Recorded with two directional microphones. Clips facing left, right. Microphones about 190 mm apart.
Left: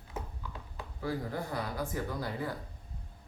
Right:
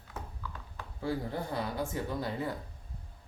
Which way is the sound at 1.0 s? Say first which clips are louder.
Right 1 dB; 25° right (ahead or behind).